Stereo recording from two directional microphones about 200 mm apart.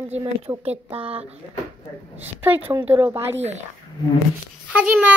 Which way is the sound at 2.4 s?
10° right (ahead or behind).